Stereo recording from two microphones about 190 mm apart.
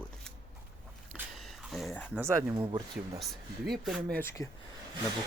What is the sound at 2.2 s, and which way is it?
Speech, 10° right (ahead or behind).